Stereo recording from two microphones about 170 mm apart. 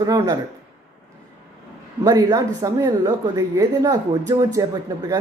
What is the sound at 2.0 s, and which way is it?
Speech, 20° right (ahead or behind).